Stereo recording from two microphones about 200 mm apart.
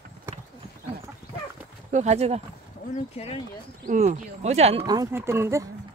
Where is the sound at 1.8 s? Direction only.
35° right (ahead or behind).